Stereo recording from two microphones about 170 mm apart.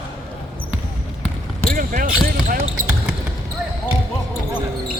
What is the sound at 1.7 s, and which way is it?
Speech, 55° right (ahead or behind).